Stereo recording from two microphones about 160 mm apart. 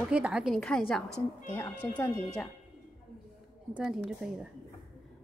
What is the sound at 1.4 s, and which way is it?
Speech, 10° left (ahead or behind).